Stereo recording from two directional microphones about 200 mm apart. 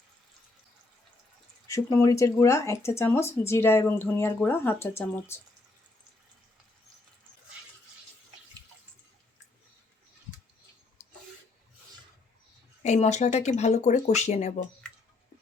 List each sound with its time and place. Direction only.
1.6 s speech: 15° left (ahead or behind)
11.0 s a sound: 35° left (ahead or behind)
12.8 s speech: 35° left (ahead or behind)